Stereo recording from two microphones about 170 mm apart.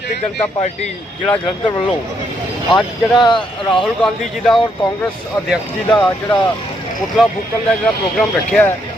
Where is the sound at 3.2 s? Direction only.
25° left (ahead or behind).